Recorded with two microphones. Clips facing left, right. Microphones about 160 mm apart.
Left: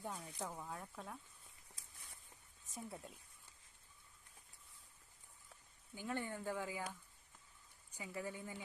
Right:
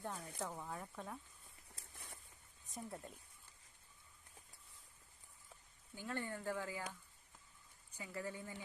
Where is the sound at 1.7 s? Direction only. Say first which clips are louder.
Right 6 dB; 65° right (ahead or behind).